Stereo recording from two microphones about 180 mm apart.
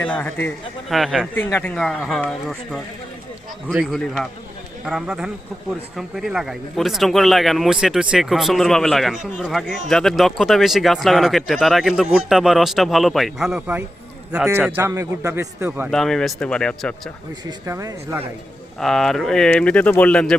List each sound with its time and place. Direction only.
0.0 s a man's voice: 5° left (ahead or behind)
0.9 s speech: centre (ahead or behind)
1.4 s speech: 10° left (ahead or behind)
3.7 s a man's voice: 5° right (ahead or behind)
15.9 s speech: centre (ahead or behind)
17.4 s speech: 20° right (ahead or behind)
18.8 s speech: centre (ahead or behind)